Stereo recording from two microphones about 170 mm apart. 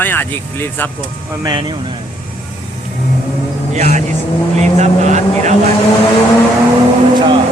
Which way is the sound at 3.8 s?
40° right (ahead or behind).